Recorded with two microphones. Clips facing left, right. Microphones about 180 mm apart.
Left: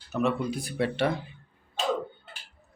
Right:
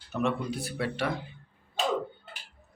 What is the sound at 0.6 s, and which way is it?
Speech, 20° left (ahead or behind).